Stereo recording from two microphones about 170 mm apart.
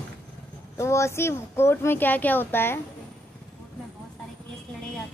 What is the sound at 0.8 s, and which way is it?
A child's voice, 15° left (ahead or behind).